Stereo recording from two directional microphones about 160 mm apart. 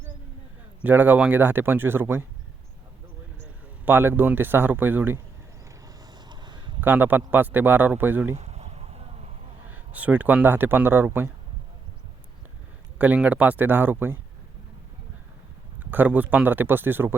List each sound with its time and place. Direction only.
0.8 s speech: 10° right (ahead or behind)
3.8 s speech: 15° right (ahead or behind)
5.8 s a sound: 25° right (ahead or behind)
6.8 s speech: 10° right (ahead or behind)
8.4 s a sound: 45° right (ahead or behind)
9.6 s speech: 10° right (ahead or behind)
13.0 s speech: 10° right (ahead or behind)
15.8 s speech: 10° right (ahead or behind)